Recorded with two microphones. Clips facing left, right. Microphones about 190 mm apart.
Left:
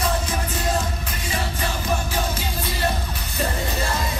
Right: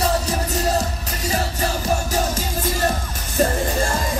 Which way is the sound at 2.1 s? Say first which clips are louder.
Right 4 dB; 45° right (ahead or behind).